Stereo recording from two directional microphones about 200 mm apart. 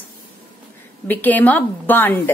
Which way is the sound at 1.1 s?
10° left (ahead or behind).